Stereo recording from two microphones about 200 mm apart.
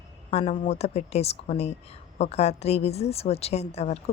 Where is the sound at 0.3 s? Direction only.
30° left (ahead or behind).